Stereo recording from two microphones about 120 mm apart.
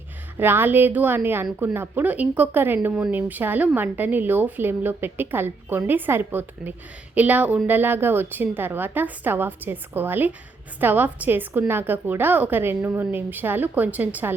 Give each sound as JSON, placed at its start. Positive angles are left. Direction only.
{"t": 0.3, "sound": "a woman's voice", "side_deg": -15}